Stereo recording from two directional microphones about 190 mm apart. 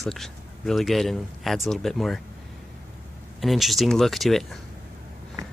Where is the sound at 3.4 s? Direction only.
Centre (ahead or behind).